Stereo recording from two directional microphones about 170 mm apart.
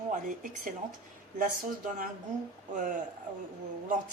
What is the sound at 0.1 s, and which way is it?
A woman's voice, 50° right (ahead or behind).